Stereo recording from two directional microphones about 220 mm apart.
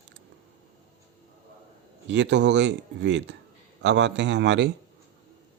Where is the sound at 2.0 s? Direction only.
55° right (ahead or behind).